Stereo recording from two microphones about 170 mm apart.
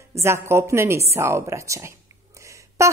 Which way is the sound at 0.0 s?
15° right (ahead or behind).